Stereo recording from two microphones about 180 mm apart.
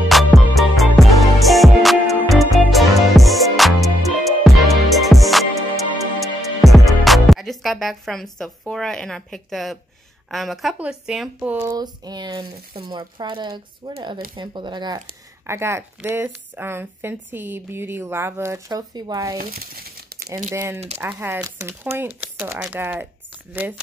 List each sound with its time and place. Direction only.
0.1 s music: centre (ahead or behind)
10.3 s speech: centre (ahead or behind)
11.7 s speech: 20° right (ahead or behind)
15.4 s speech: 15° right (ahead or behind)
19.3 s speech: 55° right (ahead or behind)
20.5 s speech: 15° right (ahead or behind)